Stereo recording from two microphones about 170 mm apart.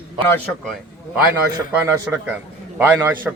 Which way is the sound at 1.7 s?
15° right (ahead or behind).